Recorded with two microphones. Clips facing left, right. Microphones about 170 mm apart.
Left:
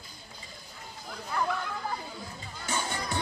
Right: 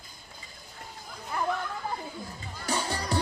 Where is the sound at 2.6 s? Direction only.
35° right (ahead or behind).